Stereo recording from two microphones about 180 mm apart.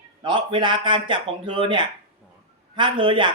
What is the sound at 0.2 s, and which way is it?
Speech, 25° right (ahead or behind).